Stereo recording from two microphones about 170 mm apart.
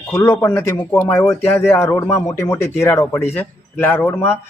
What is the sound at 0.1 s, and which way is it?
A man's voice, 15° left (ahead or behind).